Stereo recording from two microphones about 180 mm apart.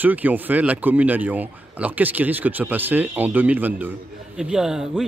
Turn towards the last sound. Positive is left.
turn(degrees=-5)  # may be behind; listen again after turning